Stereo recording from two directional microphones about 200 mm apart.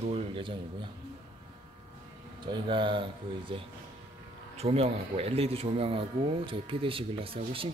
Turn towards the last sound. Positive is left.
turn(degrees=-25)  # may be behind; listen again after turning